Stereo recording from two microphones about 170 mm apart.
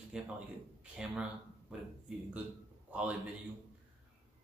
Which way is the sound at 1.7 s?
5° right (ahead or behind).